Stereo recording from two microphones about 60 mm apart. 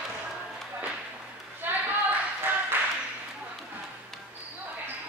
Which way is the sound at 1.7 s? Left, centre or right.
Right.